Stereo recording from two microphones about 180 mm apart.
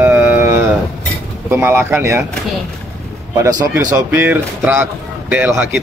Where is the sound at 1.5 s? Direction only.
10° right (ahead or behind).